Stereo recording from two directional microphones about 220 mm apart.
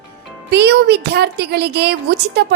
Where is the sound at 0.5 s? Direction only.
50° right (ahead or behind).